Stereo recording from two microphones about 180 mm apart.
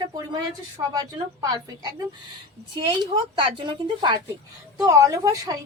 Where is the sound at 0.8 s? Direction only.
20° right (ahead or behind).